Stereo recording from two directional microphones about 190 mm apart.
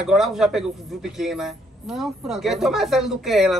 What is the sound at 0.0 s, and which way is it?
Speech, 5° right (ahead or behind).